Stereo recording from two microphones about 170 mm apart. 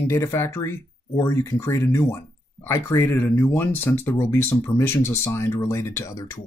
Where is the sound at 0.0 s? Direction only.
15° left (ahead or behind).